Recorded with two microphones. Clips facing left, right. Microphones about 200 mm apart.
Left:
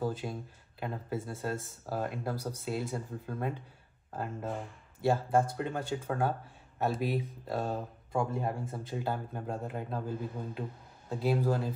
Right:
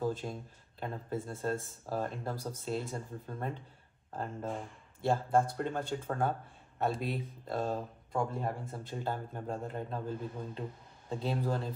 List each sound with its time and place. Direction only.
0.0 s speech: 5° left (ahead or behind)
5.0 s speech: 5° left (ahead or behind)
8.3 s speech: 20° left (ahead or behind)
9.0 s speech: 5° left (ahead or behind)